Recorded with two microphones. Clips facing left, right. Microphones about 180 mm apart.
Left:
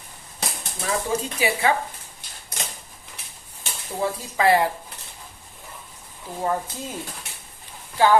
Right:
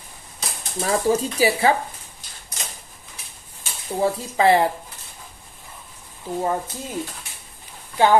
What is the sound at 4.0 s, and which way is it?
Speech, 25° right (ahead or behind).